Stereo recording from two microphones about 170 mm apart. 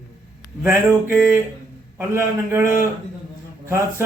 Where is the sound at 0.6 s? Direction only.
15° right (ahead or behind).